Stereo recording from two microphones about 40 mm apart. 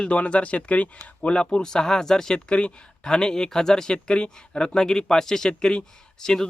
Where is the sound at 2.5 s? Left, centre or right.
Left.